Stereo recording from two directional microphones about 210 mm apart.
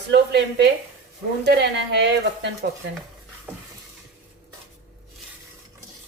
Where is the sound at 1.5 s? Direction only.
55° right (ahead or behind).